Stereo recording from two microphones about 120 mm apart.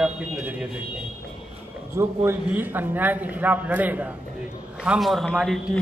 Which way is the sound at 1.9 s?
20° right (ahead or behind).